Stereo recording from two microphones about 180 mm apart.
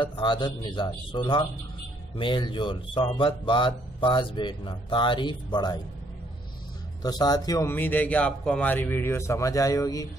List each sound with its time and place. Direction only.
0.0 s speech: 25° left (ahead or behind)
7.0 s a man's voice: 20° left (ahead or behind)